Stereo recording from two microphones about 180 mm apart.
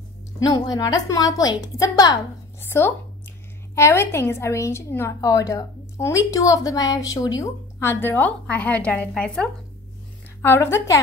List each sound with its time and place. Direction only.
0.4 s a woman's voice: 20° left (ahead or behind); by 9.5 s 5° left (ahead or behind)
10.4 s a woman's voice: 15° left (ahead or behind)